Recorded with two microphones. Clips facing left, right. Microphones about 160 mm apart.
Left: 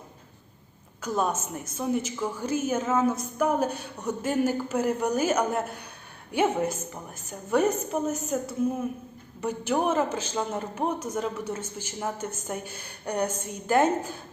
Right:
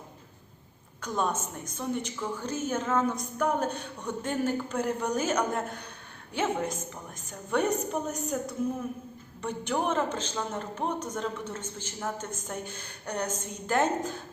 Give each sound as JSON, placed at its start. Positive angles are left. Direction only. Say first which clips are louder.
{"t": 1.0, "sound": "a woman's voice", "louder": "left 3 dB", "side_deg": 10}